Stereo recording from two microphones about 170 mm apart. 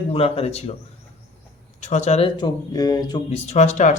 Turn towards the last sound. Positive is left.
turn(degrees=45)  # may be behind; listen again after turning